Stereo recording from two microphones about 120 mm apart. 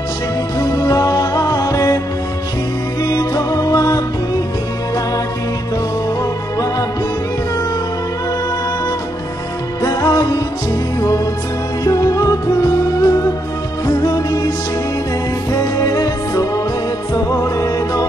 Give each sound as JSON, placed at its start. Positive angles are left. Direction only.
{"t": 0.6, "sound": "music", "side_deg": 25}
{"t": 3.0, "sound": "music", "side_deg": 25}
{"t": 9.8, "sound": "music", "side_deg": 30}
{"t": 11.8, "sound": "music", "side_deg": 30}
{"t": 15.6, "sound": "music", "side_deg": 30}